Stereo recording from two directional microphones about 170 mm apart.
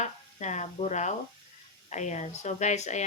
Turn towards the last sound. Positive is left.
turn(degrees=45)  # may be behind; listen again after turning